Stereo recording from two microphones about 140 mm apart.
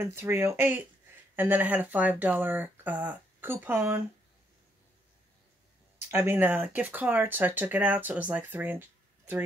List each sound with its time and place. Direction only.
0.0 s speech: 20° right (ahead or behind)
6.0 s speech: 15° right (ahead or behind)